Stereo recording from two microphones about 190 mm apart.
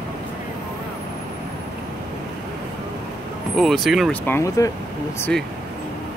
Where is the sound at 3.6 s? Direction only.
Centre (ahead or behind).